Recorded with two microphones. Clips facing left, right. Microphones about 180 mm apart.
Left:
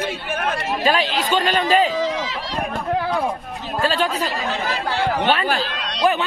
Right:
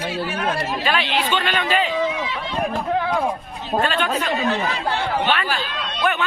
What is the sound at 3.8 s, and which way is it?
Speech, 35° left (ahead or behind).